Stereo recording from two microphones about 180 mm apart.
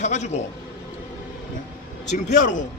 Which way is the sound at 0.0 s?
40° left (ahead or behind).